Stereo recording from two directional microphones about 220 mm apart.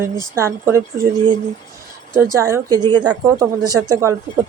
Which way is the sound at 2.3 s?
15° right (ahead or behind).